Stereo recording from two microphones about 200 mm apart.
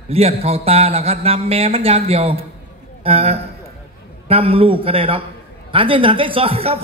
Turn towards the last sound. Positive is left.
turn(degrees=-30)  # may be behind; listen again after turning